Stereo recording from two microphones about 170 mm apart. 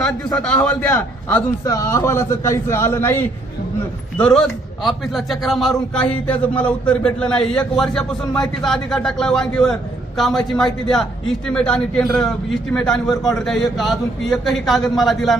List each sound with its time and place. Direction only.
0.0 s a man's voice: 5° left (ahead or behind)